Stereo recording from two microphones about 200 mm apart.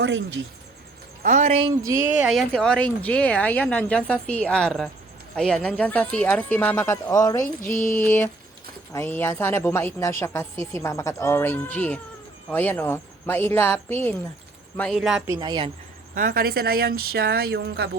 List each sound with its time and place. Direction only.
0.0 s speech: 70° right (ahead or behind)
1.2 s speech: 40° right (ahead or behind)
1.8 s speech: 10° right (ahead or behind)
2.3 s a woman's voice: 5° left (ahead or behind)
7.8 s a sound: 40° left (ahead or behind)
8.0 s a woman's voice: 10° left (ahead or behind)
15.3 s speech: 20° right (ahead or behind)
16.1 s speech: 45° right (ahead or behind)